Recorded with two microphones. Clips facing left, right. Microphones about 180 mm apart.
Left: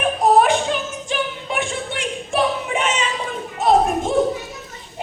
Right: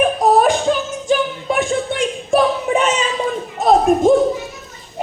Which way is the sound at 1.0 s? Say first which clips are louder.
Right 8 dB; 40° right (ahead or behind).